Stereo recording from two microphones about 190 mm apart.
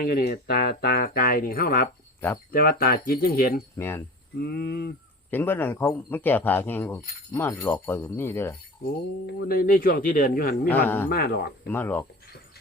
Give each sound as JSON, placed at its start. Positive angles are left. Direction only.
{"t": 0.0, "sound": "speech", "side_deg": 50}
{"t": 3.8, "sound": "speech", "side_deg": 10}
{"t": 4.4, "sound": "speech", "side_deg": 55}
{"t": 5.3, "sound": "speech", "side_deg": 10}
{"t": 8.8, "sound": "speech", "side_deg": 50}
{"t": 10.7, "sound": "speech", "side_deg": 10}
{"t": 11.1, "sound": "speech", "side_deg": 50}
{"t": 11.7, "sound": "speech", "side_deg": 10}